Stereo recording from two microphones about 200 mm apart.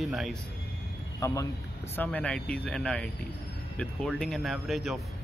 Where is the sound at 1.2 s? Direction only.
15° left (ahead or behind).